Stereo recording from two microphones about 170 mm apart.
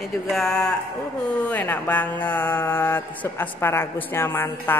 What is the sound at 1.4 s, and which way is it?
Mantra, 10° left (ahead or behind).